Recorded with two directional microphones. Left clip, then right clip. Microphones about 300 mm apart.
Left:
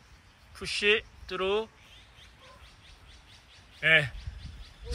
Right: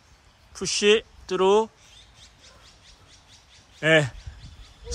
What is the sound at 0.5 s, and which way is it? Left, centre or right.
Speech, centre.